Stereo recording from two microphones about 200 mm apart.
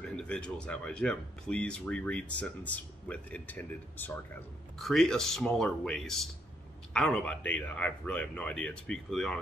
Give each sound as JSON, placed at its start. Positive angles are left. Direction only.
{"t": 0.0, "sound": "speech", "side_deg": 5}